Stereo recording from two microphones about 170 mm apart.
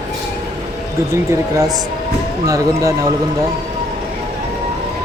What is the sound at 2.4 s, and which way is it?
Speech, 20° right (ahead or behind).